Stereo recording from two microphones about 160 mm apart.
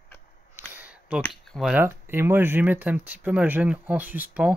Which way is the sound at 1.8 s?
15° right (ahead or behind).